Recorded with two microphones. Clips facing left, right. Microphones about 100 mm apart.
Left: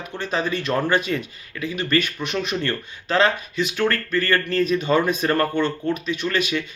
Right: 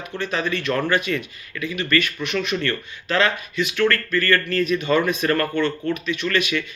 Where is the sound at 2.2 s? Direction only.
40° left (ahead or behind).